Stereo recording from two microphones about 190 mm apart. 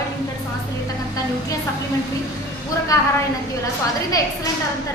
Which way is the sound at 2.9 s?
15° left (ahead or behind).